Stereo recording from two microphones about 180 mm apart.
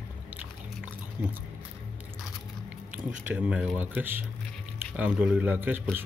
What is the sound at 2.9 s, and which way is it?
A man's voice, 10° right (ahead or behind).